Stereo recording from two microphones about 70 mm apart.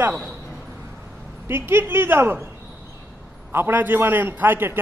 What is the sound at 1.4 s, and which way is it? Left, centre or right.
A man's voice, right.